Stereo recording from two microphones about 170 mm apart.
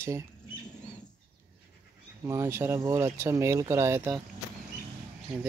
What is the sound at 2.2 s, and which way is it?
Speech, 15° right (ahead or behind).